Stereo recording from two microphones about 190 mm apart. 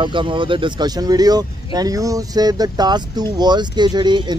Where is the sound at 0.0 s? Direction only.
25° right (ahead or behind).